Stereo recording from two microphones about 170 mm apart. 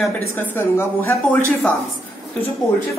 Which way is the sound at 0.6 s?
15° left (ahead or behind).